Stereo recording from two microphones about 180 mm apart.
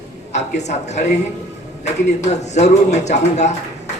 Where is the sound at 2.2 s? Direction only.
40° left (ahead or behind).